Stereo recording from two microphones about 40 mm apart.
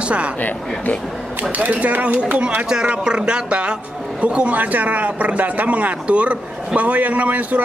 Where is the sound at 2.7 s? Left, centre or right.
Right.